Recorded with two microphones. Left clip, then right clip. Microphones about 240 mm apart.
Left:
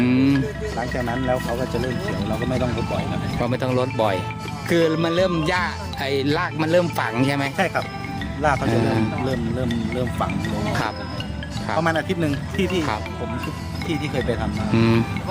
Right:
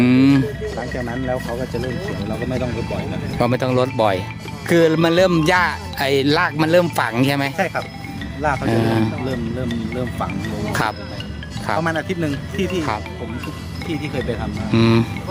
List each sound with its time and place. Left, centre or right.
0.0 s music: centre
0.8 s speech: centre
3.3 s speech: centre
8.7 s speech: centre
9.2 s speech: centre
10.7 s speech: centre
11.8 s speech: centre
14.7 s speech: centre